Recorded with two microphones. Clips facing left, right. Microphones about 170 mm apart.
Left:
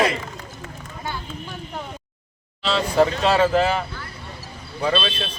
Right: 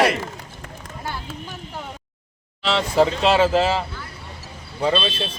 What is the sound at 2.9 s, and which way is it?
Speech, 25° right (ahead or behind).